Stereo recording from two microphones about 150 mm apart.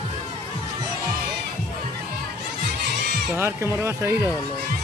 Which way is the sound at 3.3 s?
15° right (ahead or behind).